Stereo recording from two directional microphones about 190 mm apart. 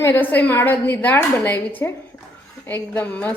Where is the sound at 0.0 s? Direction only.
10° left (ahead or behind).